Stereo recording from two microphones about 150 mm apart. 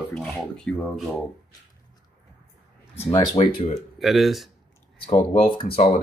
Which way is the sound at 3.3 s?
45° left (ahead or behind).